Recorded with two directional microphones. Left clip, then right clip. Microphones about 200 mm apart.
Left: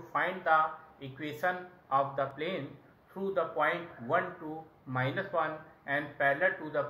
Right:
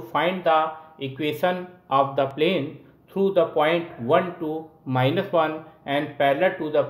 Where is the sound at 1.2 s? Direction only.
55° right (ahead or behind).